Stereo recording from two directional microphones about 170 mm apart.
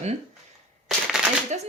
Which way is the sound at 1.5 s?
45° right (ahead or behind).